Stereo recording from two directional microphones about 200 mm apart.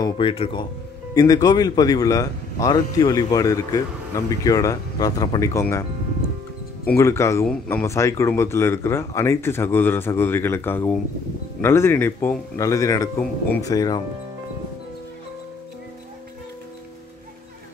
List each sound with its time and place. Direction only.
0.0 s a man's voice: 25° left (ahead or behind)
6.9 s a man's voice: 15° left (ahead or behind)